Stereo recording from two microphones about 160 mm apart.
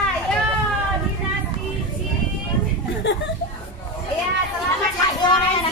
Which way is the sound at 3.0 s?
90° left.